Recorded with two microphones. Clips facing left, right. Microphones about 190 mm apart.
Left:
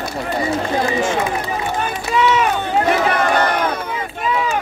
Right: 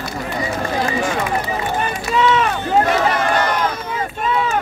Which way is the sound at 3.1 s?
60° left (ahead or behind).